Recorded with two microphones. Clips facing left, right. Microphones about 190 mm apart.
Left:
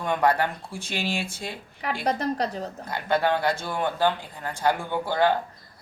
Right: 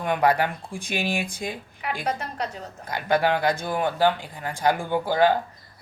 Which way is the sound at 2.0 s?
35° left (ahead or behind).